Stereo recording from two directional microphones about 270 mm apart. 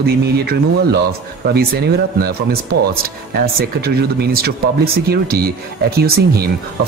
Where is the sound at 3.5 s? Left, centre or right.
Right.